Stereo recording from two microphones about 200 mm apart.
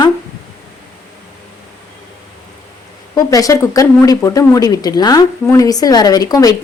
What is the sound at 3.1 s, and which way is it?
Speech, 15° left (ahead or behind).